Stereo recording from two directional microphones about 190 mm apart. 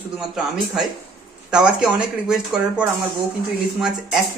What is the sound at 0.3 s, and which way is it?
Speech, centre (ahead or behind).